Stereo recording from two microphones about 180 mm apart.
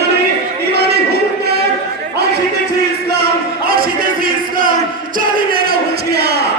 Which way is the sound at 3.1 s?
60° right (ahead or behind).